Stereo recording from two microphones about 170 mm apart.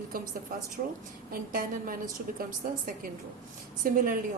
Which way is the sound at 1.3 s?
55° right (ahead or behind).